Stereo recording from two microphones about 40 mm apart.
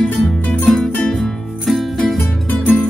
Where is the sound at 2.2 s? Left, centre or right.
Left.